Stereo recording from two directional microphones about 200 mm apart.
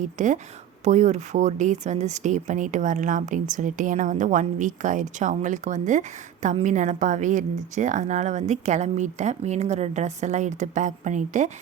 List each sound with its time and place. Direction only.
0.0 s speech: 40° right (ahead or behind)